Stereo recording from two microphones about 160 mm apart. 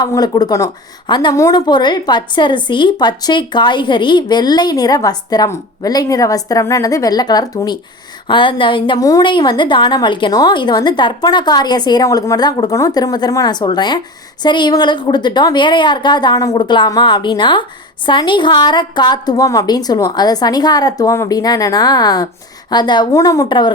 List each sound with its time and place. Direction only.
0.0 s a woman's voice: 25° left (ahead or behind)